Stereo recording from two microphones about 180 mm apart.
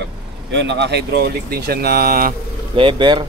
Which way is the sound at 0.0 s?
75° right (ahead or behind).